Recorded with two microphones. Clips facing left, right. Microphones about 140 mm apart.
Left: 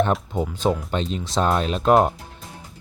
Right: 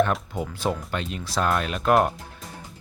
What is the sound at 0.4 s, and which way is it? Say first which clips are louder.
Speech: left 4 dB; 20° left (ahead or behind).